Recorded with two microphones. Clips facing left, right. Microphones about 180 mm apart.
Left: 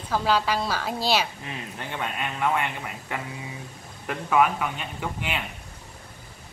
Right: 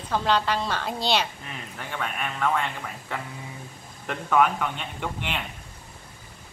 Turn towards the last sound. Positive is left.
turn(degrees=5)  # may be behind; listen again after turning